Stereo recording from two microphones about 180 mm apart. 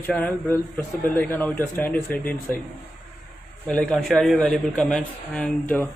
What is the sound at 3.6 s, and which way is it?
A man's voice, 5° left (ahead or behind).